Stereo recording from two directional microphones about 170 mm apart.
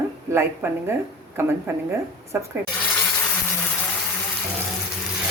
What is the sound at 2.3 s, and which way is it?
Speech, 10° right (ahead or behind).